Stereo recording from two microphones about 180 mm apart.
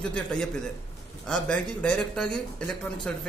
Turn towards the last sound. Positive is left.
turn(degrees=5)  # may be behind; listen again after turning